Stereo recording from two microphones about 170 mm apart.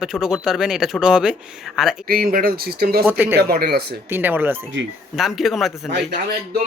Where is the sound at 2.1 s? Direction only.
60° right (ahead or behind).